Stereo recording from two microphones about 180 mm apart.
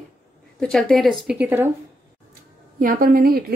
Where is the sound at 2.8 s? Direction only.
55° right (ahead or behind).